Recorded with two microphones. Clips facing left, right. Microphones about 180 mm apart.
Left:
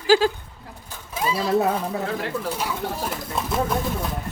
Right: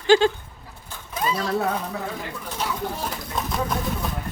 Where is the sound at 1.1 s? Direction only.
5° left (ahead or behind).